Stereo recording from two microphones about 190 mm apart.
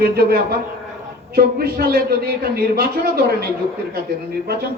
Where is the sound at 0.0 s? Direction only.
55° right (ahead or behind).